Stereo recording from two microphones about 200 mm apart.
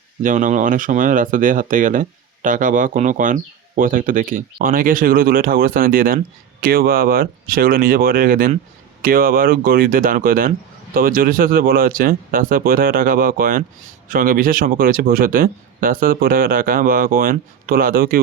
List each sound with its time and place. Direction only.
0.2 s speech: 40° right (ahead or behind)